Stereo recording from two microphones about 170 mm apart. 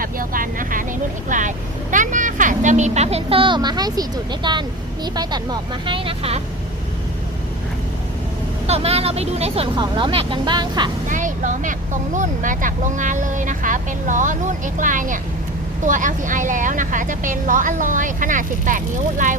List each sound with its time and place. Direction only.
0.0 s vehicle: 55° right (ahead or behind); by 4.0 s 25° right (ahead or behind)
4.4 s speech: 25° right (ahead or behind)
8.6 s speech: 40° right (ahead or behind)
9.7 s speech: 25° right (ahead or behind)
11.1 s speech: 50° right (ahead or behind)